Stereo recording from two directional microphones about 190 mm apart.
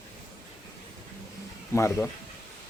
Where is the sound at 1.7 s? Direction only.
15° left (ahead or behind).